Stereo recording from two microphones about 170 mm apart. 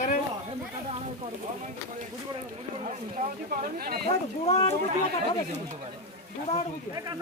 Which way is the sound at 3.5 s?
60° right (ahead or behind).